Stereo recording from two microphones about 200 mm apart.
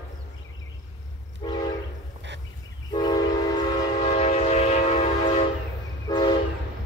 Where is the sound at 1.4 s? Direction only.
20° left (ahead or behind).